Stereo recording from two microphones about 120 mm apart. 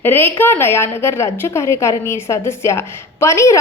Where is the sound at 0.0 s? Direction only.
20° left (ahead or behind).